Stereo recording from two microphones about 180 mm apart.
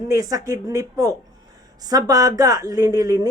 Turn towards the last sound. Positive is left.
turn(degrees=-20)  # may be behind; listen again after turning